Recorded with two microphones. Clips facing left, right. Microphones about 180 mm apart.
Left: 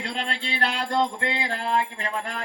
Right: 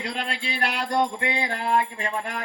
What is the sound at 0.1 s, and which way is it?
Music, 5° right (ahead or behind).